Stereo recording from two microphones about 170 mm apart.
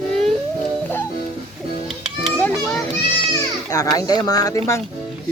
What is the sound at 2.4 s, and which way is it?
Children playing, 5° left (ahead or behind).